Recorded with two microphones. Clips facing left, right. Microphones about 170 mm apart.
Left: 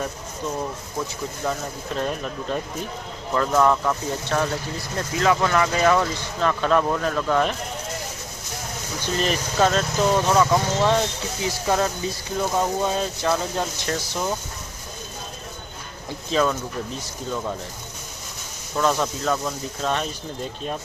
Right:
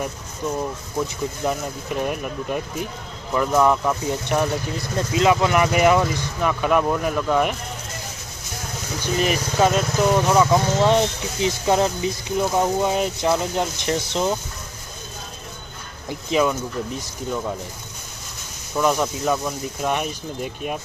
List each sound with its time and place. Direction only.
1.5 s speech: 15° right (ahead or behind)
9.0 s speech: 15° right (ahead or behind)
16.0 s speech: 15° right (ahead or behind)
18.7 s speech: 15° right (ahead or behind)